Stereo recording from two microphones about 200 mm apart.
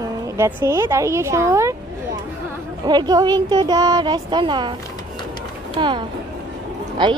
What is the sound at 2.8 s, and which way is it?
Speech, 20° right (ahead or behind).